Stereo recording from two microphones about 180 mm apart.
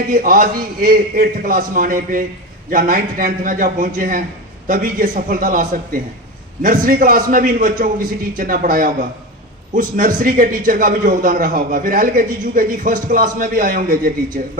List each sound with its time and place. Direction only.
0.1 s a man's voice: 50° right (ahead or behind)